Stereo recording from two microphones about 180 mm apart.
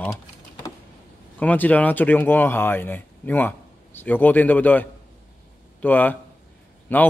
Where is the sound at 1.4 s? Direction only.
10° left (ahead or behind).